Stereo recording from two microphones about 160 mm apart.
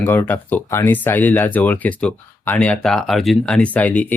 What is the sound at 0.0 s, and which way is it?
Speech, 15° left (ahead or behind).